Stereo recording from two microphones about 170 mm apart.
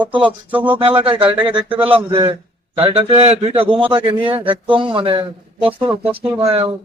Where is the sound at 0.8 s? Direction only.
30° right (ahead or behind).